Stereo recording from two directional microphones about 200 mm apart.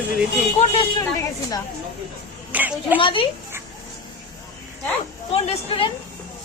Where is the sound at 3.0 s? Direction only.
25° left (ahead or behind).